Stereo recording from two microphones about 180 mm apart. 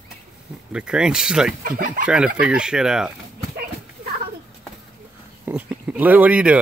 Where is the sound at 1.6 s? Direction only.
50° right (ahead or behind).